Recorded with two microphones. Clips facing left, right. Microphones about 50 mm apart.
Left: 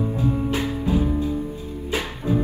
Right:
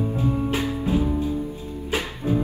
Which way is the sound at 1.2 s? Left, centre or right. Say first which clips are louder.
Left 1 dB; left.